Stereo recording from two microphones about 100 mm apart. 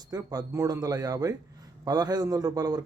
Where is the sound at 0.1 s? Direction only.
40° right (ahead or behind).